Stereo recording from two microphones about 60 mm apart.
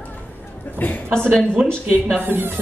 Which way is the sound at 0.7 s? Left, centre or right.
Left.